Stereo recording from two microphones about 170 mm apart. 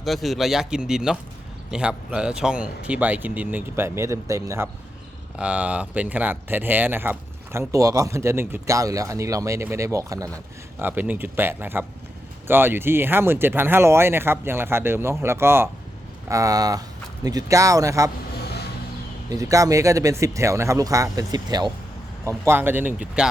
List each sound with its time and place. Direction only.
0.0 s speech: centre (ahead or behind); by 18.1 s 20° right (ahead or behind)
18.3 s a sound: 70° left (ahead or behind)
19.3 s speech: 20° right (ahead or behind)